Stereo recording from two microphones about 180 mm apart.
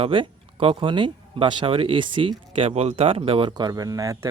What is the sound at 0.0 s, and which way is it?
Speech, 30° right (ahead or behind).